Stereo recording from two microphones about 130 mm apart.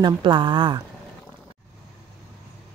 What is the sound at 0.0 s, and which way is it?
Speech, 35° right (ahead or behind).